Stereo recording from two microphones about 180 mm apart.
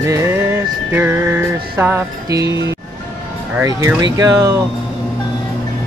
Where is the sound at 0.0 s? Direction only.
15° right (ahead or behind).